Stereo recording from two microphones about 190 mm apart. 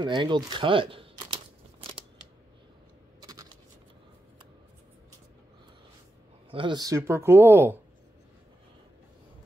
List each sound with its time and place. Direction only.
0.0 s speech: 25° right (ahead or behind)
3.2 s a sound: 20° right (ahead or behind)
6.5 s speech: 25° right (ahead or behind)